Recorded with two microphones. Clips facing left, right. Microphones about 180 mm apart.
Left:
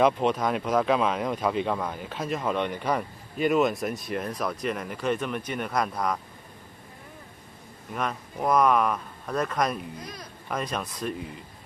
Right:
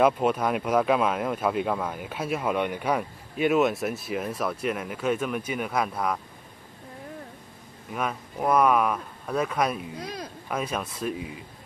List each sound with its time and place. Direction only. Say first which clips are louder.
0.0 s speech: right 1 dB; 5° right (ahead or behind)
7.9 s speech: right 1 dB; 5° right (ahead or behind)
9.9 s speech: right 5 dB; 70° right (ahead or behind)
10.5 s speech: right 1 dB; 5° right (ahead or behind)